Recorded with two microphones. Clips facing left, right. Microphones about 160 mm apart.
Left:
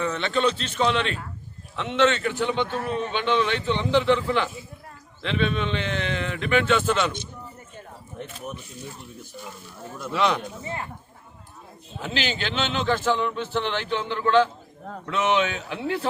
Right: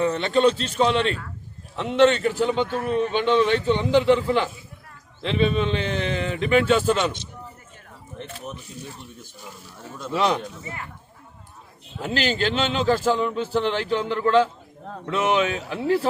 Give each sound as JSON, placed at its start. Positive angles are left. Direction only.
{"t": 0.0, "sound": "a man's voice", "side_deg": -35}
{"t": 3.8, "sound": "a man's voice", "side_deg": -10}
{"t": 5.2, "sound": "a man's voice", "side_deg": -35}
{"t": 8.2, "sound": "speech", "side_deg": 10}
{"t": 10.1, "sound": "a man's voice", "side_deg": -40}
{"t": 12.0, "sound": "a man's voice", "side_deg": -45}